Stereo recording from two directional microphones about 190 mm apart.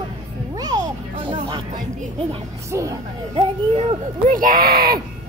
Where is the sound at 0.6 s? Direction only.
20° right (ahead or behind).